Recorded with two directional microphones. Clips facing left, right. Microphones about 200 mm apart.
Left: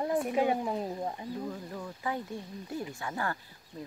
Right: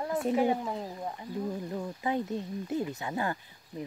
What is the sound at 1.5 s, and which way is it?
Speech, 20° right (ahead or behind).